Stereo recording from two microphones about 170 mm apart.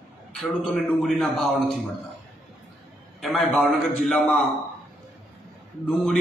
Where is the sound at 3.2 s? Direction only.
5° left (ahead or behind).